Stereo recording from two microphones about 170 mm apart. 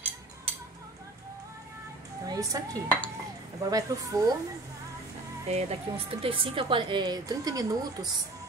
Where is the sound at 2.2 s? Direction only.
20° right (ahead or behind).